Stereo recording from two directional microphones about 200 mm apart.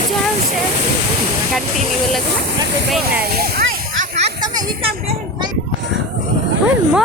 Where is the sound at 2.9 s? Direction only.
Centre (ahead or behind).